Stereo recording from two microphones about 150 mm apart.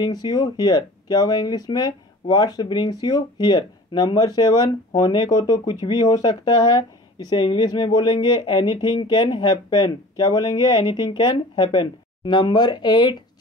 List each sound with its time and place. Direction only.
0.0 s speech: 25° left (ahead or behind)